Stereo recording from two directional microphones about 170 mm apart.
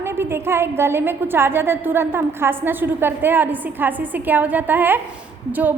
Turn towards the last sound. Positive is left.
turn(degrees=-10)  # may be behind; listen again after turning